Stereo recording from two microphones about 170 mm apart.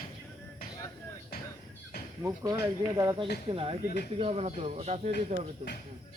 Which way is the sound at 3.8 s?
65° left (ahead or behind).